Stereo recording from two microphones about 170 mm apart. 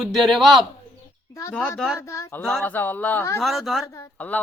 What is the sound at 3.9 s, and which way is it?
Speech, 10° left (ahead or behind).